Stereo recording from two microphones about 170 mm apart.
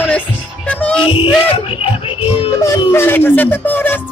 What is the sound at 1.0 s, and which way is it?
Music, 30° left (ahead or behind).